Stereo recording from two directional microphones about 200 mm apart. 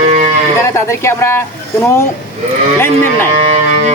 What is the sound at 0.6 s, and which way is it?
Speech, 15° left (ahead or behind).